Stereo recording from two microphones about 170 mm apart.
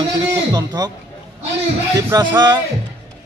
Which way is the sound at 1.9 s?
25° right (ahead or behind).